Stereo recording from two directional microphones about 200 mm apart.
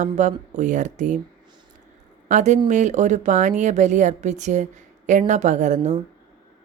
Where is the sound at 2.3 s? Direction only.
35° right (ahead or behind).